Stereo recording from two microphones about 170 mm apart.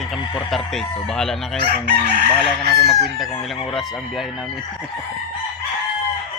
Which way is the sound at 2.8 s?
Centre (ahead or behind).